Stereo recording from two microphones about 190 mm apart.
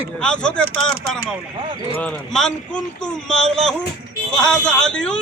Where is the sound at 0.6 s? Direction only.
55° right (ahead or behind).